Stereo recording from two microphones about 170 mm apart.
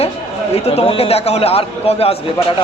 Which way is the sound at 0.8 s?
35° left (ahead or behind).